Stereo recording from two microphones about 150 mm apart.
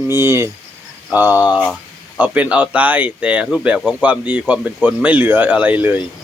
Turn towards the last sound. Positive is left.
turn(degrees=-10)  # may be behind; listen again after turning